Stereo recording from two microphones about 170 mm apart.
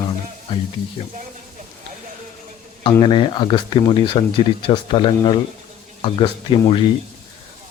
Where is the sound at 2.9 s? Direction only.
25° left (ahead or behind).